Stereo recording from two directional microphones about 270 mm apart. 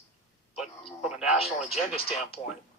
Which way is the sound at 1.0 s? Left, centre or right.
Centre.